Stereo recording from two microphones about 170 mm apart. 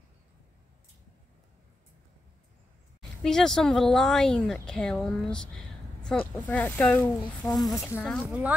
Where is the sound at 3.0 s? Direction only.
5° left (ahead or behind).